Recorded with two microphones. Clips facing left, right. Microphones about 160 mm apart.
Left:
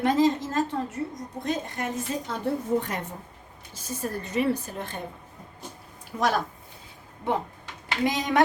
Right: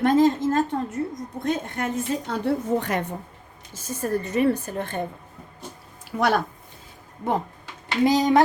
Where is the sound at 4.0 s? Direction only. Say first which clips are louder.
Right 5 dB; 50° right (ahead or behind).